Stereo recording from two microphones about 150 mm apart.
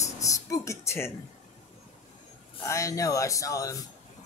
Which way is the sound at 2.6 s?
20° left (ahead or behind).